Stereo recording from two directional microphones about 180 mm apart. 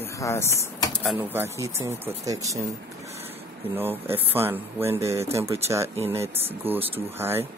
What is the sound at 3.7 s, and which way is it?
Speech, 10° right (ahead or behind).